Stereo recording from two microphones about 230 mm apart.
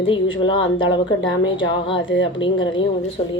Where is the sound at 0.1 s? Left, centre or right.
Left.